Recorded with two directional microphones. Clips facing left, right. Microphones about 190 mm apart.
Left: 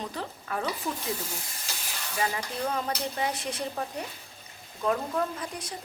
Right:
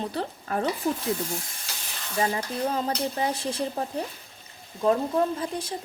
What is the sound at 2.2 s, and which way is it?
A woman's voice, 30° right (ahead or behind).